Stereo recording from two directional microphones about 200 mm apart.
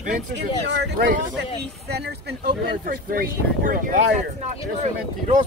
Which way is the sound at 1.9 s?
55° right (ahead or behind).